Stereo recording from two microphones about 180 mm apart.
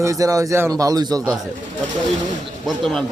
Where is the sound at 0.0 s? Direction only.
20° right (ahead or behind).